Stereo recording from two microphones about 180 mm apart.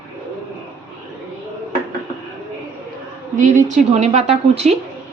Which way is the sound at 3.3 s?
45° right (ahead or behind).